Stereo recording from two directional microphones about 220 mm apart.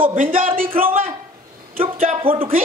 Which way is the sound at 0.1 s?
40° right (ahead or behind).